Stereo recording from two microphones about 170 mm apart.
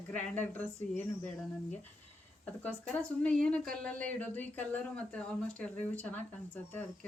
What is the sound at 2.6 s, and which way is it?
Speech, 5° left (ahead or behind).